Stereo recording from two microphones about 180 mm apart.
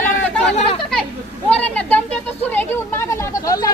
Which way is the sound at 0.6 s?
30° left (ahead or behind).